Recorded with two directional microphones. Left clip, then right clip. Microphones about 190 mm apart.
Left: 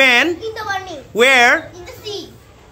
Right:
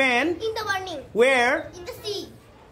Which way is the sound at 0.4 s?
15° right (ahead or behind).